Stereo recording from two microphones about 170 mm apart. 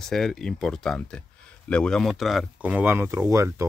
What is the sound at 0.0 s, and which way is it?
Speech, 5° left (ahead or behind).